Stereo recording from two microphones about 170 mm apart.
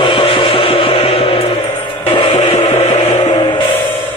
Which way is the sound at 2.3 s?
40° left (ahead or behind).